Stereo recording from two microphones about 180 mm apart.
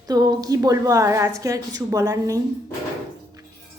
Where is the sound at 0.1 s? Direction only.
20° right (ahead or behind).